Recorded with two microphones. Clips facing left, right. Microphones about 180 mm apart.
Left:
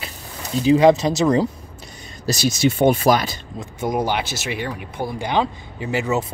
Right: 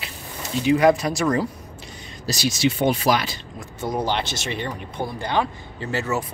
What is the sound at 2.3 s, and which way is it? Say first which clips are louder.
Speech: left 3 dB; 45° left (ahead or behind).